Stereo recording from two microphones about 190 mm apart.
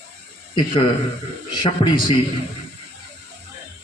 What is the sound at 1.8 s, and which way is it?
Speech, 25° left (ahead or behind).